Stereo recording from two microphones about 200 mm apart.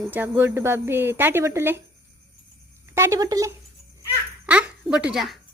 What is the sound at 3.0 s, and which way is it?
Speech, 15° right (ahead or behind).